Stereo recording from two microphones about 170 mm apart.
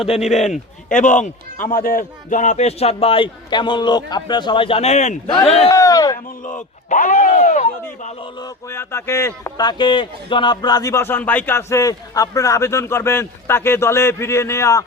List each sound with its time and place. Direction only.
0.3 s a man's voice: 40° left (ahead or behind)
5.6 s speech: 20° left (ahead or behind)
6.4 s speech: 45° left (ahead or behind)
8.4 s speech: 20° left (ahead or behind)